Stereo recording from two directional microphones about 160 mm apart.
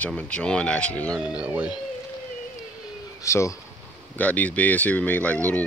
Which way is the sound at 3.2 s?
20° left (ahead or behind).